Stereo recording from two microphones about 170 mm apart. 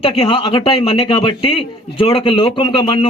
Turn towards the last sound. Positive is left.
turn(degrees=30)  # may be behind; listen again after turning